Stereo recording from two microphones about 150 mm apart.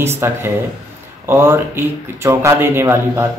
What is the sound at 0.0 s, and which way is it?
Speech, 15° right (ahead or behind).